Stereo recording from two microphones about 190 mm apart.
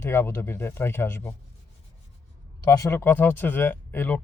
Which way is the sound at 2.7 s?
15° left (ahead or behind).